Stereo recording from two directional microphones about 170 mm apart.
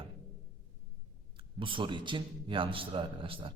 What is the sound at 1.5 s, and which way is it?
A man's voice, 30° right (ahead or behind).